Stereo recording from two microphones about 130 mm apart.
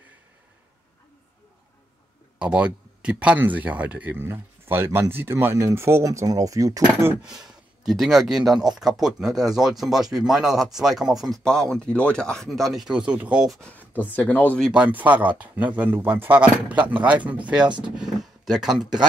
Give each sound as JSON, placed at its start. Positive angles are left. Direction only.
{"t": 2.3, "sound": "speech", "side_deg": -10}
{"t": 7.4, "sound": "speech", "side_deg": 0}
{"t": 13.6, "sound": "speech", "side_deg": 10}
{"t": 14.6, "sound": "speech", "side_deg": -10}
{"t": 17.6, "sound": "speech", "side_deg": -35}
{"t": 17.9, "sound": "speech", "side_deg": 0}